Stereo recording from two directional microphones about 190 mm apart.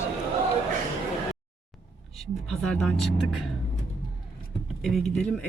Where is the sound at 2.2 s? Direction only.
5° left (ahead or behind).